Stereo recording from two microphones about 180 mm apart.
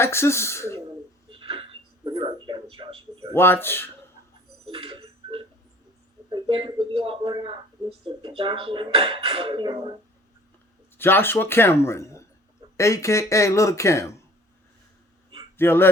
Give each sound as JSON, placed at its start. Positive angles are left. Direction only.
{"t": 0.0, "sound": "speech", "side_deg": 15}
{"t": 1.3, "sound": "a sound", "side_deg": -30}
{"t": 3.3, "sound": "speech", "side_deg": 10}
{"t": 4.7, "sound": "tick-tock", "side_deg": -30}
{"t": 6.3, "sound": "a sound", "side_deg": -25}
{"t": 6.9, "sound": "speech", "side_deg": -30}
{"t": 10.9, "sound": "speech", "side_deg": 10}
{"t": 15.5, "sound": "speech", "side_deg": 10}